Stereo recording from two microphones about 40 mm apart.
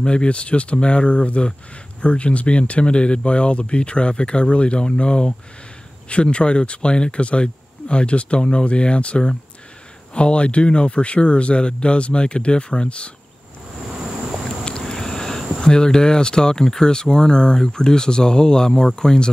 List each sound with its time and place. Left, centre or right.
0.0 s speech: left
14.9 s speech: centre